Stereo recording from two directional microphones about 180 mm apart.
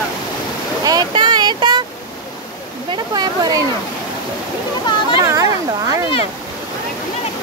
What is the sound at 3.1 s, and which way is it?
Waterfall, 20° right (ahead or behind).